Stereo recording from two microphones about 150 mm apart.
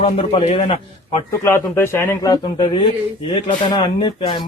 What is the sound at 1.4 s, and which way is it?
Speech, 15° left (ahead or behind).